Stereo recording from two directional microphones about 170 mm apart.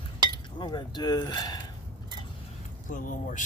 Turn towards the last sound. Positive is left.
turn(degrees=50)  # may be behind; listen again after turning